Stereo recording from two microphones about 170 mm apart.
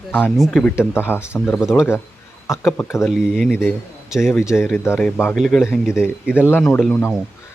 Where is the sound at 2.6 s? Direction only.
15° left (ahead or behind).